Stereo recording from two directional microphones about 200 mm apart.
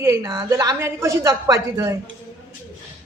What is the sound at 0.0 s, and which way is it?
Speech, 15° right (ahead or behind).